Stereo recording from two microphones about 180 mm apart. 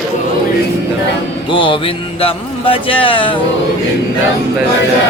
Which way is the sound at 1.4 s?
25° left (ahead or behind).